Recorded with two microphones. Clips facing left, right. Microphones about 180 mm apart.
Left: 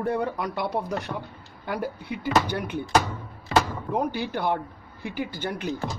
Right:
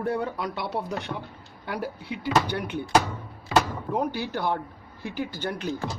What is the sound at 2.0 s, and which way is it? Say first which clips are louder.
Speech: even; 50° left (ahead or behind).